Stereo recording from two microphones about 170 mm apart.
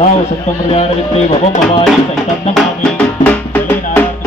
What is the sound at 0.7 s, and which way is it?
Speech, 35° left (ahead or behind).